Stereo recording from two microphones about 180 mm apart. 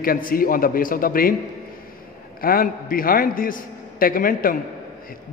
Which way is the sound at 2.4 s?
55° left (ahead or behind).